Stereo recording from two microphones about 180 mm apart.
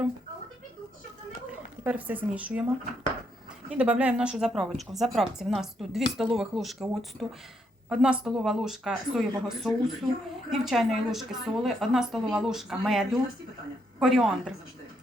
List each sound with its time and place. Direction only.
1.8 s speech: 10° right (ahead or behind)
3.7 s a woman's voice: 5° right (ahead or behind)